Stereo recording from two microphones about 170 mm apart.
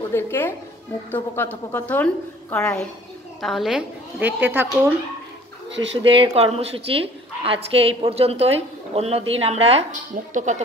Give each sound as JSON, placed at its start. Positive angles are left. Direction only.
{"t": 0.1, "sound": "a woman's voice", "side_deg": 15}
{"t": 6.0, "sound": "a woman's voice", "side_deg": -30}